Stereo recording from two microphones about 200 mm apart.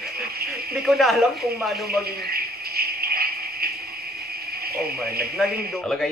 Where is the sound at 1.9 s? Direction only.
50° right (ahead or behind).